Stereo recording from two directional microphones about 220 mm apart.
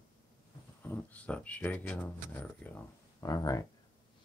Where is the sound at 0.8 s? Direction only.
5° left (ahead or behind).